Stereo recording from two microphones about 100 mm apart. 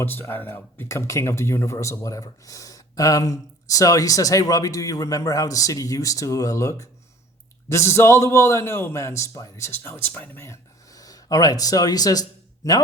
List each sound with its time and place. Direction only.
0.0 s a man's voice: 20° left (ahead or behind); by 12.2 s 40° left (ahead or behind)